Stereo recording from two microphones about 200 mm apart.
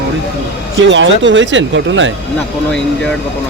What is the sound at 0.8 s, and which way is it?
Speech, 65° right (ahead or behind).